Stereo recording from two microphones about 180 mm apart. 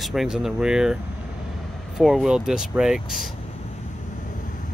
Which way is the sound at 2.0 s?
Centre (ahead or behind).